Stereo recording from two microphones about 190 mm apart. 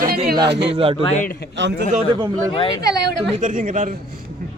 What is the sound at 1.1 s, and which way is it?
Speech, 45° left (ahead or behind).